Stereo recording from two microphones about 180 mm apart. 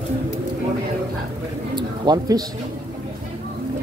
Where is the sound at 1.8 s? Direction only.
20° right (ahead or behind).